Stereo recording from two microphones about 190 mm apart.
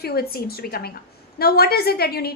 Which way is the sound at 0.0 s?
55° left (ahead or behind).